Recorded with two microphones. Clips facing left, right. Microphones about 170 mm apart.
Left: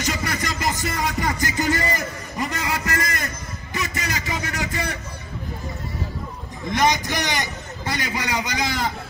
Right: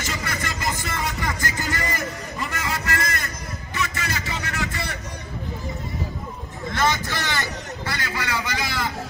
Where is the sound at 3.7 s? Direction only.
35° left (ahead or behind).